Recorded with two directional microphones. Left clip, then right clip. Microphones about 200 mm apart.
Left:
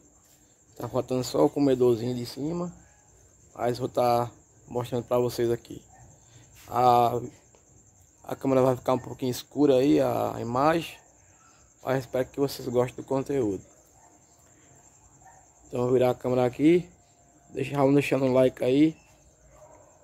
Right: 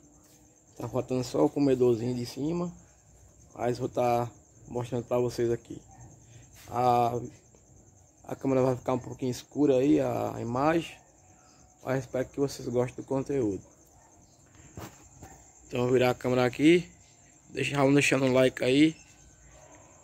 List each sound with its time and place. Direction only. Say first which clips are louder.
0.7 s speech: left 3 dB; 5° left (ahead or behind)
6.7 s speech: left 4 dB; 5° left (ahead or behind)
15.7 s speech: left 2 dB; centre (ahead or behind)